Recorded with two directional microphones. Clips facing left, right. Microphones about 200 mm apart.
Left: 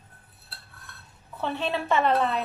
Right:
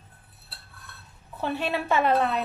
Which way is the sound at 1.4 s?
10° right (ahead or behind).